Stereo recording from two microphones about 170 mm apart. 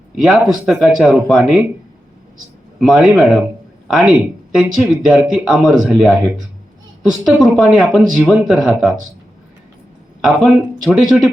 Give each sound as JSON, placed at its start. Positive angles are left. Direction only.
{"t": 0.2, "sound": "speech", "side_deg": -5}
{"t": 2.8, "sound": "speech", "side_deg": -5}
{"t": 10.2, "sound": "speech", "side_deg": 0}